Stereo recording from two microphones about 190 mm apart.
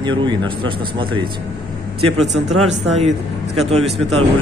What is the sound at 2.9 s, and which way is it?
Speech, 35° right (ahead or behind).